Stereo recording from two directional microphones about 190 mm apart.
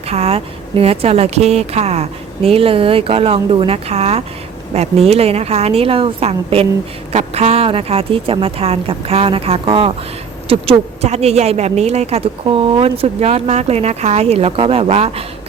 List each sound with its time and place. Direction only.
0.1 s a woman's voice: 30° right (ahead or behind)